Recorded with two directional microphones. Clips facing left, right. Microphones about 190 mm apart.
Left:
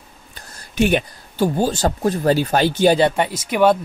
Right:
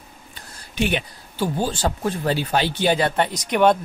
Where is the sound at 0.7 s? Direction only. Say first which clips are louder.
Left 6 dB; 45° left (ahead or behind).